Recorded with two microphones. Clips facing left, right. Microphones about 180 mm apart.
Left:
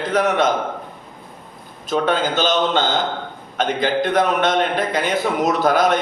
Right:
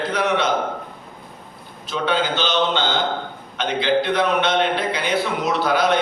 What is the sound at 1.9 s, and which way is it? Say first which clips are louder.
A man's voice: left 3 dB; 45° left (ahead or behind).